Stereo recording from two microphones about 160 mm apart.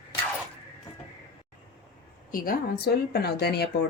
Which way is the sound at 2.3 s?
65° left (ahead or behind).